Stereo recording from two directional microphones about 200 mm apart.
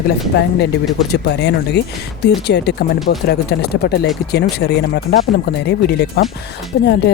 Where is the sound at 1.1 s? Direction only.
60° left (ahead or behind).